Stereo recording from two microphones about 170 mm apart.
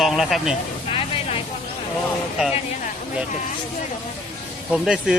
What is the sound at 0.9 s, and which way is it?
Vehicle, 35° left (ahead or behind).